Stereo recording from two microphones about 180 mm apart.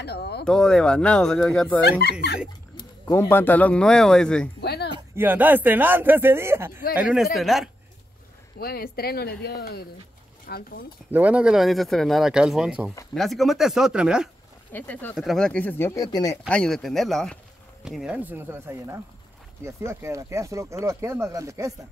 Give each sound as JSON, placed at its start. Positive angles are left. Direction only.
{"t": 0.0, "sound": "a sound", "side_deg": 65}
{"t": 0.5, "sound": "speech", "side_deg": 5}
{"t": 1.9, "sound": "speech", "side_deg": 60}
{"t": 3.1, "sound": "speech", "side_deg": 15}
{"t": 4.6, "sound": "a sound", "side_deg": 65}
{"t": 5.1, "sound": "speech", "side_deg": -10}
{"t": 8.5, "sound": "speech", "side_deg": 60}
{"t": 11.1, "sound": "speech", "side_deg": -10}
{"t": 14.7, "sound": "speech", "side_deg": 10}
{"t": 16.4, "sound": "speech", "side_deg": 5}